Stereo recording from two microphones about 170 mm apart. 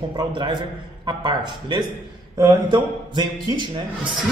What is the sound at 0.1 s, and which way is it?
A man's voice, 25° right (ahead or behind).